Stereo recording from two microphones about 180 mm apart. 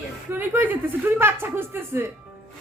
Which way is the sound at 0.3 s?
10° right (ahead or behind).